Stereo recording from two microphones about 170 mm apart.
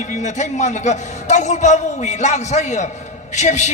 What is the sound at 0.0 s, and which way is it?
A man's voice, 45° left (ahead or behind).